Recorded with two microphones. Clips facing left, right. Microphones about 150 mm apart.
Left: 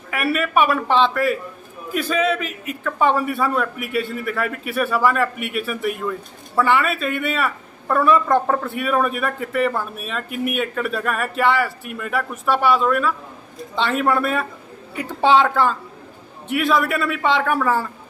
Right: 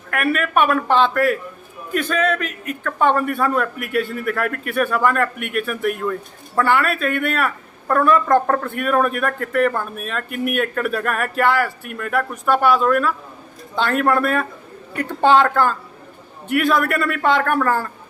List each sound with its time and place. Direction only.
0.1 s a man's voice: 5° left (ahead or behind)